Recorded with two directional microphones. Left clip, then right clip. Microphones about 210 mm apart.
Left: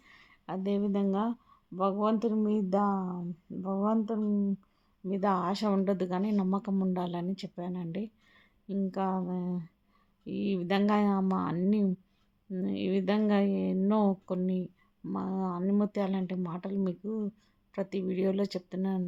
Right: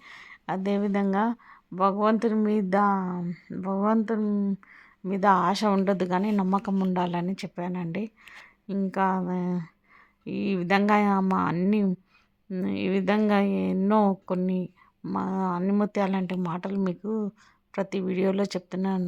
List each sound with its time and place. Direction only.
0.0 s speech: 20° right (ahead or behind)
2.9 s a sound: 35° right (ahead or behind)
4.0 s a woman's voice: 25° right (ahead or behind)